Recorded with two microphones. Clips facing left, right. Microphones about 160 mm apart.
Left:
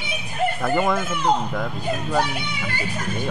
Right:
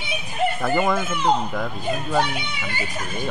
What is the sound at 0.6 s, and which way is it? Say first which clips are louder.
Speech: left 1 dB; centre (ahead or behind).